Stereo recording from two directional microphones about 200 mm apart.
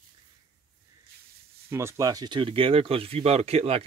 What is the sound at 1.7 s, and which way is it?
Speech, 15° right (ahead or behind).